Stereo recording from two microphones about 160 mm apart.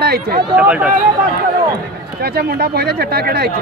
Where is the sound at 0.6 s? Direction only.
10° right (ahead or behind).